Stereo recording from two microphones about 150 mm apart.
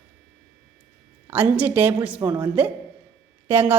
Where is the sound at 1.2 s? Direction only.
10° right (ahead or behind).